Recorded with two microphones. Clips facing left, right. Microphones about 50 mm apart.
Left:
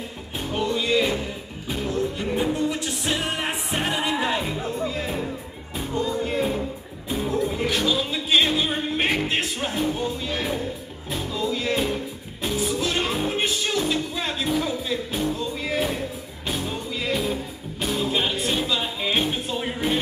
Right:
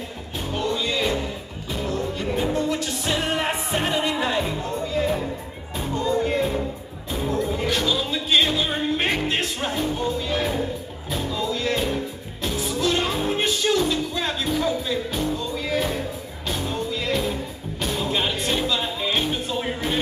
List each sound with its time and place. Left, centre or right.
0.6 s music: centre
15.0 s music: centre